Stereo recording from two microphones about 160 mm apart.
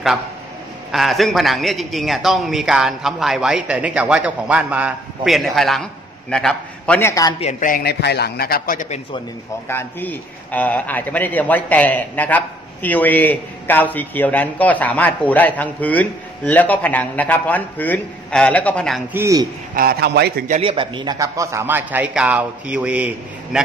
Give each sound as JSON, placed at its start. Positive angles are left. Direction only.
{"t": 0.9, "sound": "a man's voice", "side_deg": 0}
{"t": 7.0, "sound": "a man's voice", "side_deg": 20}
{"t": 7.6, "sound": "a man's voice", "side_deg": 70}
{"t": 9.7, "sound": "a man's voice", "side_deg": 15}
{"t": 19.1, "sound": "a man's voice", "side_deg": -20}
{"t": 19.7, "sound": "a man's voice", "side_deg": -70}
{"t": 20.6, "sound": "a man's voice", "side_deg": -30}